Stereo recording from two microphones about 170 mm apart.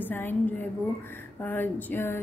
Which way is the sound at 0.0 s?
10° left (ahead or behind).